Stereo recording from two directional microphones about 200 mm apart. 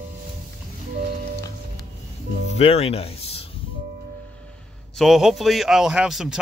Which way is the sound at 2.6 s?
30° left (ahead or behind).